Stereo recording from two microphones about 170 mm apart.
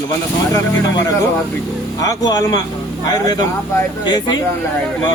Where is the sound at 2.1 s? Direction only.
20° left (ahead or behind).